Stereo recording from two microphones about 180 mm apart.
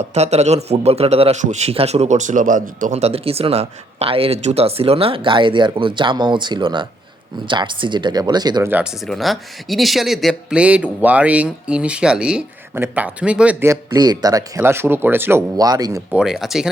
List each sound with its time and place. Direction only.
0.1 s a man's voice: 35° right (ahead or behind)
8.7 s speech: 5° right (ahead or behind); by 16.0 s 20° right (ahead or behind)
16.1 s speech: centre (ahead or behind)